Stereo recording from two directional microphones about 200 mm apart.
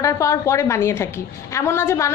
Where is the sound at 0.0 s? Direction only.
15° left (ahead or behind).